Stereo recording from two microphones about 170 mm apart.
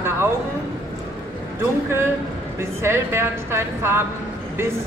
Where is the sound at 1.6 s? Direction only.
15° right (ahead or behind).